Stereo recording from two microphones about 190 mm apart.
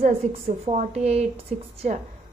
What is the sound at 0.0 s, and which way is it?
A woman's voice, 35° right (ahead or behind).